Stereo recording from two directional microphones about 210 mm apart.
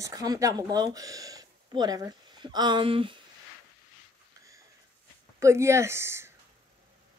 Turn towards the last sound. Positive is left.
turn(degrees=-10)  # may be behind; listen again after turning